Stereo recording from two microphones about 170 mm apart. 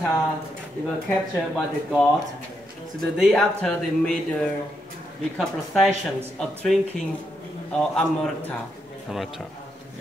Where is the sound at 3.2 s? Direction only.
5° left (ahead or behind).